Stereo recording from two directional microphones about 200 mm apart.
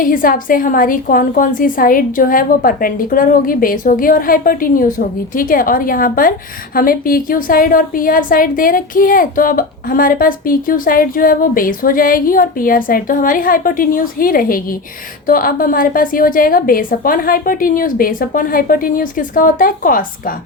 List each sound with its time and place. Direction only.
0.0 s a woman's voice: 45° left (ahead or behind)